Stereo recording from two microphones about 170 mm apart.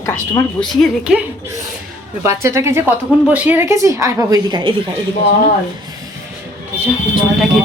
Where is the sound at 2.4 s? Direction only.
15° right (ahead or behind).